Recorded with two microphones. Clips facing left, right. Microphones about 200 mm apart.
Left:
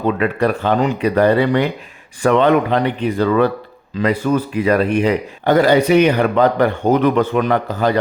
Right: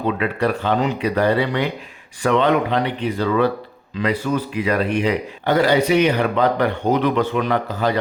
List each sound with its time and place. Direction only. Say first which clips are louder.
0.2 s a man's voice: left 4 dB; 50° left (ahead or behind)